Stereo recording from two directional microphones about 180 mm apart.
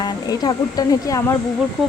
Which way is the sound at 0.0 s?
20° left (ahead or behind).